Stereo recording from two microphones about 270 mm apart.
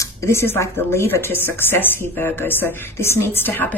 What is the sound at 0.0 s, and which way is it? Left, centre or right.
A woman's voice, centre.